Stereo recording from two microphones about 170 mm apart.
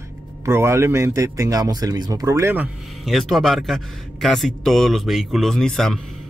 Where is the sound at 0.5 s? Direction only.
15° right (ahead or behind).